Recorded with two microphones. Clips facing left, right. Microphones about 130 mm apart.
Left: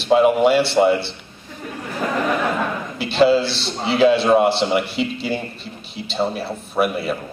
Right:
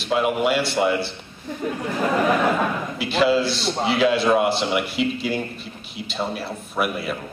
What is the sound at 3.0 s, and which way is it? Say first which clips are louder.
A man's voice: left 4 dB; 30° left (ahead or behind).